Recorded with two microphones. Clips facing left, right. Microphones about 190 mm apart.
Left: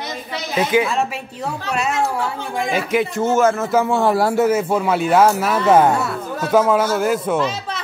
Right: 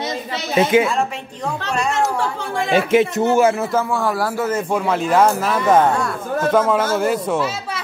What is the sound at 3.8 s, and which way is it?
Speech, 25° left (ahead or behind).